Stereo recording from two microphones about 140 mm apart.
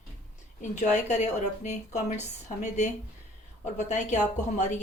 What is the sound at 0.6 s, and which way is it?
Speech, 55° left (ahead or behind).